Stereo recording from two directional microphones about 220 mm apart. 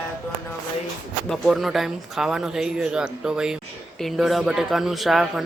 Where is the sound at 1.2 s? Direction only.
Centre (ahead or behind).